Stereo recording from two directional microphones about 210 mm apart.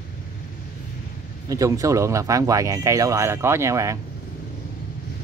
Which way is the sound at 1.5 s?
15° right (ahead or behind).